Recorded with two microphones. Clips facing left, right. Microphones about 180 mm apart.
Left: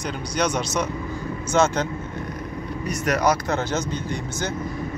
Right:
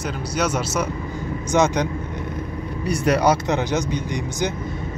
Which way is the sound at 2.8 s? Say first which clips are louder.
Right 4 dB; 30° right (ahead or behind).